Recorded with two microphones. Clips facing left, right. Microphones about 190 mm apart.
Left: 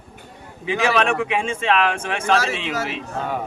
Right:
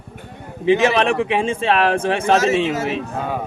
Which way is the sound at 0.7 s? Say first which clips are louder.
Right 1 dB; 30° right (ahead or behind).